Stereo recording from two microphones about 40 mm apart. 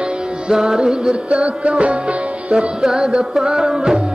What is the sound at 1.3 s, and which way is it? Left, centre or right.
Music, right.